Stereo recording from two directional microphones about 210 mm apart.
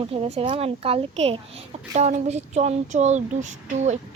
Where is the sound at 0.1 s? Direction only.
25° right (ahead or behind).